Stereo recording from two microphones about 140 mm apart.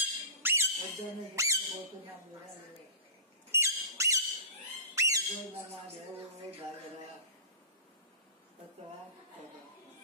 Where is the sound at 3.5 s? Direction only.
20° right (ahead or behind).